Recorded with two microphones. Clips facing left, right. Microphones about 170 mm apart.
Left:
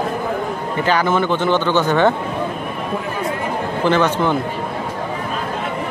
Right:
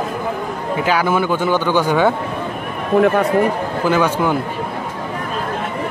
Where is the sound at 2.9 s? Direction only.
70° right (ahead or behind).